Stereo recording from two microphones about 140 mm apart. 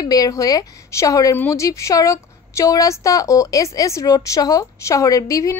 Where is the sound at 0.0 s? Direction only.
25° left (ahead or behind).